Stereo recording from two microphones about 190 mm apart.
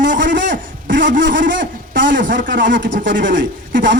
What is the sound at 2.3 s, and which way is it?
A man's voice, 70° right (ahead or behind).